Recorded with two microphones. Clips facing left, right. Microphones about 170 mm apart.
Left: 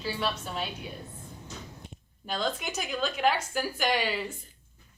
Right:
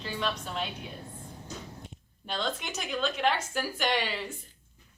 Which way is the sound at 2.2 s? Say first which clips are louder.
Left 2 dB; 5° left (ahead or behind).